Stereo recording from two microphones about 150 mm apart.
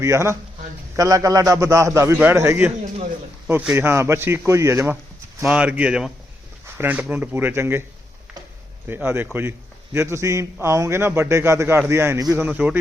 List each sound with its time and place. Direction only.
0.0 s a man's voice: 20° right (ahead or behind)
3.8 s a man's voice: 15° right (ahead or behind)
8.9 s a man's voice: 15° right (ahead or behind)